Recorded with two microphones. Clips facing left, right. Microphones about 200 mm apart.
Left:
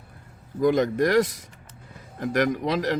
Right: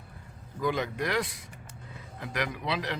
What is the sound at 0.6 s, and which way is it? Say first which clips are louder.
Speech: left 9 dB; 45° left (ahead or behind).